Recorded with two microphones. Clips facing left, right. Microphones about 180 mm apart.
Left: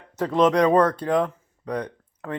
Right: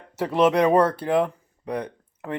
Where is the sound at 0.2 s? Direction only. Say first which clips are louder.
Even; 10° right (ahead or behind).